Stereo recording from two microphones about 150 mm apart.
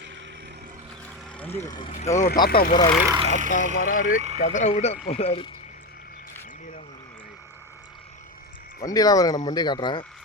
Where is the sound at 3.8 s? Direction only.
65° left (ahead or behind).